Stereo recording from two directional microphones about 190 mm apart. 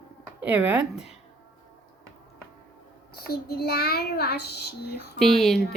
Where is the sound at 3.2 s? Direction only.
55° left (ahead or behind).